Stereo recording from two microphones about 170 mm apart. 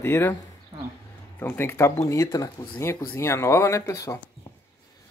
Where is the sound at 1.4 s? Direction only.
10° left (ahead or behind).